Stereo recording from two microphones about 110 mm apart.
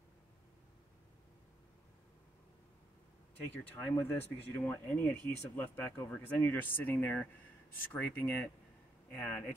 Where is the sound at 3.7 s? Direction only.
20° left (ahead or behind).